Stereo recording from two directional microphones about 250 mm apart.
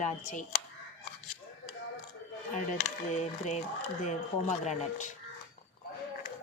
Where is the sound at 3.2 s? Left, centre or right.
Left.